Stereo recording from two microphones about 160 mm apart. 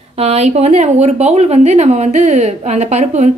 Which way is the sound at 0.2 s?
40° right (ahead or behind).